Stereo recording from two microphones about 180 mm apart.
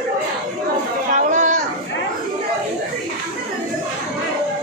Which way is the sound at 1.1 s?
45° right (ahead or behind).